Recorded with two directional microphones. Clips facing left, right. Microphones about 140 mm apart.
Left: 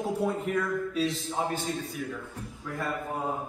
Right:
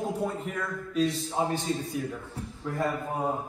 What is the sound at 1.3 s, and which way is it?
Speech, 25° right (ahead or behind).